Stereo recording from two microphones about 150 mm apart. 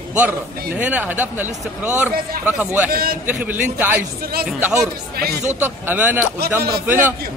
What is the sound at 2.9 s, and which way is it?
Speech, 90° right.